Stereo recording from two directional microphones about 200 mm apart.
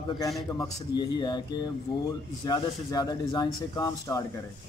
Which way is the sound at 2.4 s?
20° left (ahead or behind).